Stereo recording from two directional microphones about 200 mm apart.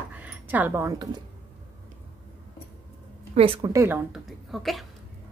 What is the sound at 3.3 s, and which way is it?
Speech, 25° right (ahead or behind).